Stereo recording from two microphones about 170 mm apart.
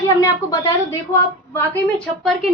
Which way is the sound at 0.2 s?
15° left (ahead or behind).